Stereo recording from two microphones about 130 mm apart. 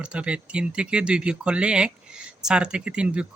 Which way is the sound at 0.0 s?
10° right (ahead or behind).